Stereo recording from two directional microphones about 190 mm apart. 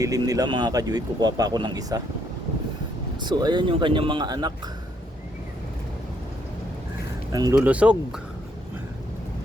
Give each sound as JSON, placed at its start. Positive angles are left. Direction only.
{"t": 0.0, "sound": "speech", "side_deg": -20}
{"t": 3.2, "sound": "speech", "side_deg": -25}
{"t": 7.3, "sound": "speech", "side_deg": -15}